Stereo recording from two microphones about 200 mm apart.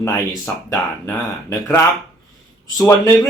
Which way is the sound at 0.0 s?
10° left (ahead or behind).